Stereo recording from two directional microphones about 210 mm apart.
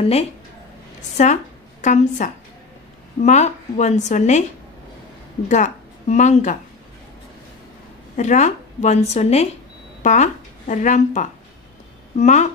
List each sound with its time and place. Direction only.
0.0 s a woman's voice: 30° left (ahead or behind)
5.5 s speech: 35° left (ahead or behind)
8.2 s a woman's voice: 35° left (ahead or behind)